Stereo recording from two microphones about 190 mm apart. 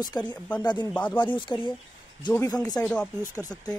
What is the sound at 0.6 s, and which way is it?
Speech, 25° left (ahead or behind).